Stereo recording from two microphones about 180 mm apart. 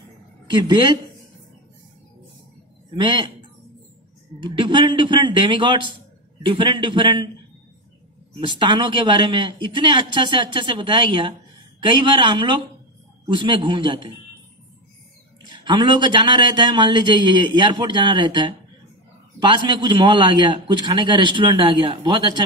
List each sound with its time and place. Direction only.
0.5 s a man's voice: 25° right (ahead or behind)
3.0 s a man's voice: 25° right (ahead or behind)
4.4 s a man's voice: 25° right (ahead or behind)
8.4 s a man's voice: 25° right (ahead or behind)
15.4 s a man's voice: 25° right (ahead or behind)